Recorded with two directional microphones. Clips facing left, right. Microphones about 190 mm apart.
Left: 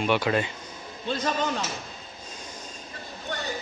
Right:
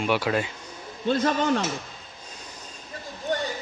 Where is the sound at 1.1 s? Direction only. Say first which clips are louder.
Right 5 dB; 55° right (ahead or behind).